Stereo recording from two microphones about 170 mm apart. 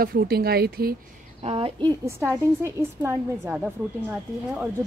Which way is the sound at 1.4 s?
35° right (ahead or behind).